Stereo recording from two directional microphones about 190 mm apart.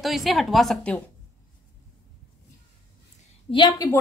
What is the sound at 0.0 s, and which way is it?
A woman's voice, centre (ahead or behind).